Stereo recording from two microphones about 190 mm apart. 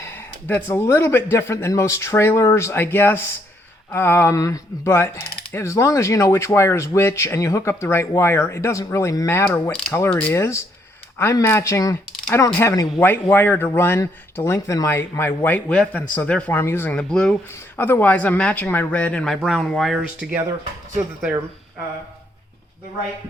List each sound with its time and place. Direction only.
0.0 s speech: 10° left (ahead or behind); by 20.4 s 5° right (ahead or behind)